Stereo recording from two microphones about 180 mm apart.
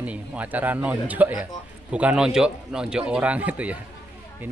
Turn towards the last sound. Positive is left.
turn(degrees=-10)  # may be behind; listen again after turning